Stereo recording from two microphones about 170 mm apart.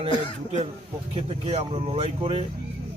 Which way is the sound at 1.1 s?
35° right (ahead or behind).